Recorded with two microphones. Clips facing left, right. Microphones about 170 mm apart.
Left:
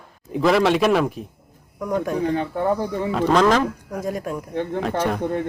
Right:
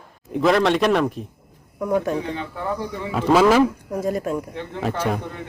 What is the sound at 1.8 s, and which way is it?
Speech, 5° right (ahead or behind).